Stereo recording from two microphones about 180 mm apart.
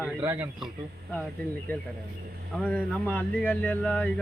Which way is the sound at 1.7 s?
10° left (ahead or behind).